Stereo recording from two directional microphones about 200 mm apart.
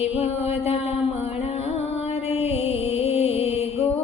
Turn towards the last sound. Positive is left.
turn(degrees=30)  # may be behind; listen again after turning